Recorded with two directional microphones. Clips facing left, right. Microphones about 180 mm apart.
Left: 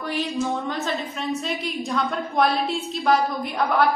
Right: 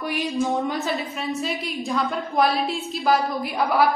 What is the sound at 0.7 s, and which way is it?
A woman's voice, centre (ahead or behind).